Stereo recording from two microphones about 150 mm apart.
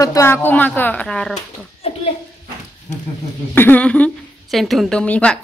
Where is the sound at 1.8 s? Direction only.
40° left (ahead or behind).